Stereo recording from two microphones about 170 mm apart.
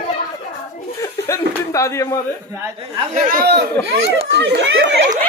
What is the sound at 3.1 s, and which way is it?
Speech, 55° right (ahead or behind).